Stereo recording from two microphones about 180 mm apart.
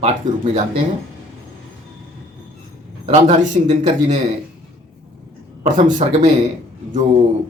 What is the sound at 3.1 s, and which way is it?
Speech, 40° right (ahead or behind).